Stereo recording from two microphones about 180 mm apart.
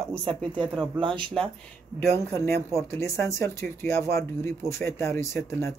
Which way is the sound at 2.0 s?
15° left (ahead or behind).